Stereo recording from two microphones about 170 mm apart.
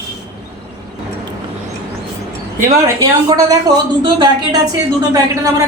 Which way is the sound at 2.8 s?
20° right (ahead or behind).